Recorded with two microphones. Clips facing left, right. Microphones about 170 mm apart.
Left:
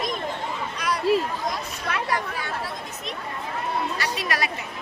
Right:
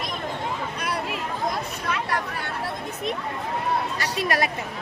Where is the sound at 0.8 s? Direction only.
55° right (ahead or behind).